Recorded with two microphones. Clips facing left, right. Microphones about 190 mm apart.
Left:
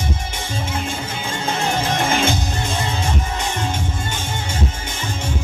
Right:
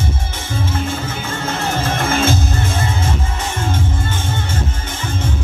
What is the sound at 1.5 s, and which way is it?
Music, 15° left (ahead or behind).